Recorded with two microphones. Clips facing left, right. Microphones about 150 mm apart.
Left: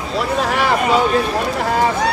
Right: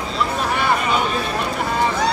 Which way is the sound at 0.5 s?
90° left.